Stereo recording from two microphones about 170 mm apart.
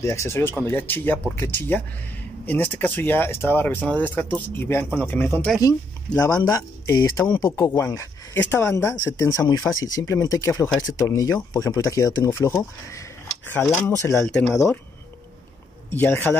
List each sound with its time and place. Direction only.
0.0 s speech: 15° left (ahead or behind)
14.1 s speech: 5° left (ahead or behind)
15.9 s speech: 10° left (ahead or behind)